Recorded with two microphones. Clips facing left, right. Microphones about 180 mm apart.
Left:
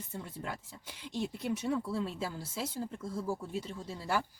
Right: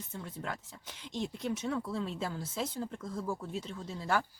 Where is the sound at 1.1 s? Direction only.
10° left (ahead or behind).